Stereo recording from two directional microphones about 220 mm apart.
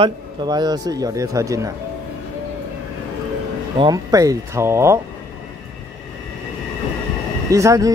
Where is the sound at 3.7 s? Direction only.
15° right (ahead or behind).